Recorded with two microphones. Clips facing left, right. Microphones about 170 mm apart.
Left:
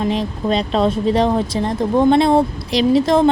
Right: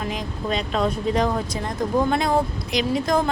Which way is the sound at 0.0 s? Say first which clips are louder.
Left 8 dB; 30° left (ahead or behind).